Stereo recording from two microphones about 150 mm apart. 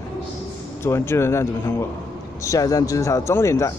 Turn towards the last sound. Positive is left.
turn(degrees=20)  # may be behind; listen again after turning